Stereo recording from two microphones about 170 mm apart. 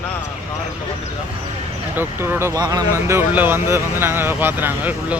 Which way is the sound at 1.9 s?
10° right (ahead or behind).